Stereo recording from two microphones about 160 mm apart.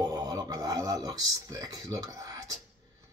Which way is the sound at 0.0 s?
25° right (ahead or behind).